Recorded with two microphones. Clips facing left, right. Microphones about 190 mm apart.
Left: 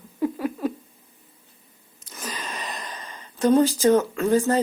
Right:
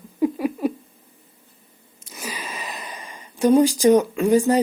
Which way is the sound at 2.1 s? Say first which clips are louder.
Right 1 dB; 10° right (ahead or behind).